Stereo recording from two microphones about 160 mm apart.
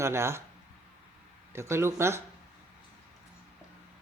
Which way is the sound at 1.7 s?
15° right (ahead or behind).